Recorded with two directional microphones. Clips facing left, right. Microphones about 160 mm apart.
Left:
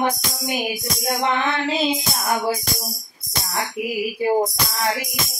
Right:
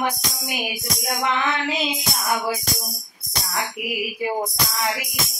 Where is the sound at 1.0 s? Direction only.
30° left (ahead or behind).